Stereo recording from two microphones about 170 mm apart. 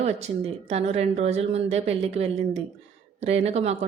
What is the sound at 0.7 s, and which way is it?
Speech, 40° right (ahead or behind).